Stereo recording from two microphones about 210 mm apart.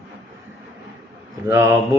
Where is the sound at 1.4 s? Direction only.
10° right (ahead or behind).